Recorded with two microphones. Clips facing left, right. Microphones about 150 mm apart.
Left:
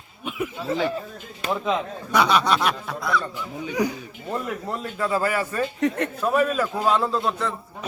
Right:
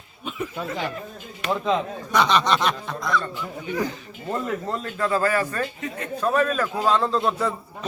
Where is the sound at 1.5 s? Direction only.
5° left (ahead or behind).